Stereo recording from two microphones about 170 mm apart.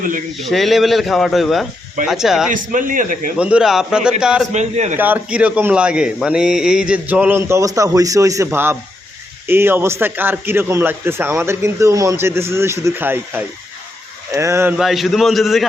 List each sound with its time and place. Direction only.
0.3 s speech: centre (ahead or behind)
2.5 s speech: 50° right (ahead or behind)
3.3 s speech: 5° right (ahead or behind)
4.5 s speech: 40° right (ahead or behind)
4.9 s a man's voice: 10° right (ahead or behind)
14.8 s speech: centre (ahead or behind)